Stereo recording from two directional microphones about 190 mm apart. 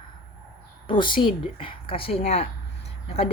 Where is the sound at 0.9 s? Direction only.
25° left (ahead or behind).